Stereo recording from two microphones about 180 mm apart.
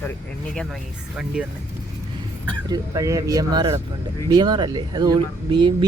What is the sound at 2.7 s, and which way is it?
Speech, 15° right (ahead or behind).